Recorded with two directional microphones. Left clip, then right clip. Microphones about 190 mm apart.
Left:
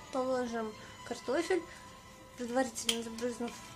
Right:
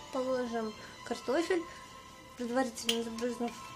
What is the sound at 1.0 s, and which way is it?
A woman's voice, 5° right (ahead or behind).